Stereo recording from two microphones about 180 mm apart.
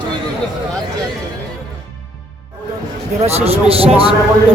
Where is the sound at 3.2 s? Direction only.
35° right (ahead or behind).